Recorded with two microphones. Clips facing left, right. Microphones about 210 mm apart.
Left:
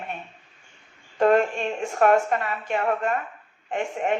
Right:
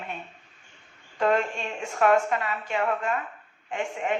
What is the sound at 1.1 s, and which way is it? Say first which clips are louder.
A woman's voice: left 5 dB; 45° left (ahead or behind).